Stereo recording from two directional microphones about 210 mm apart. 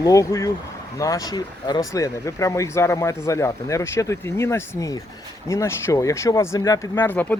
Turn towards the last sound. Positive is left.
turn(degrees=10)  # may be behind; listen again after turning